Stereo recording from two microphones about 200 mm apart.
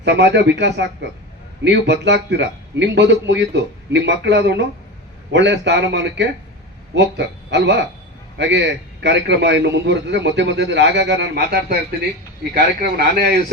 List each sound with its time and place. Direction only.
0.0 s a man's voice: 60° right (ahead or behind)